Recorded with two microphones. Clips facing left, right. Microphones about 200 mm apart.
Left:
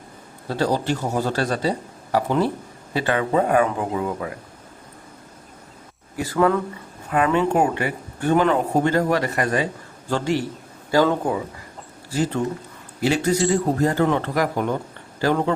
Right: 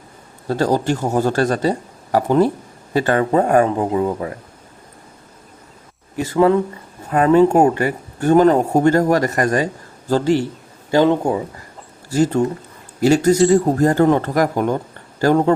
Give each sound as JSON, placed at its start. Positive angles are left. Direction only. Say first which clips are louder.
{"t": 0.4, "sound": "speech", "louder": "right 4 dB", "side_deg": -45}
{"t": 6.1, "sound": "speech", "louder": "right 5 dB", "side_deg": -20}
{"t": 7.1, "sound": "a man's voice", "louder": "right 7 dB", "side_deg": -40}
{"t": 10.9, "sound": "speech", "louder": "right 4 dB", "side_deg": -20}
{"t": 12.1, "sound": "speech", "louder": "right 6 dB", "side_deg": -45}